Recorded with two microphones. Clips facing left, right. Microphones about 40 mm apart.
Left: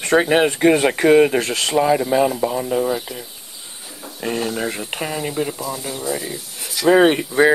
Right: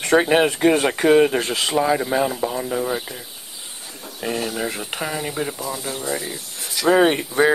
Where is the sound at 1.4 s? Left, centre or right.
Centre.